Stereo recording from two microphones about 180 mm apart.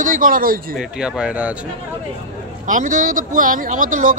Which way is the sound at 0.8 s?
5° right (ahead or behind).